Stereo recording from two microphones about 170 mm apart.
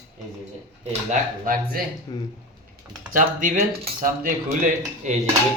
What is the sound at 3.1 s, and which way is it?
Speech, 50° right (ahead or behind).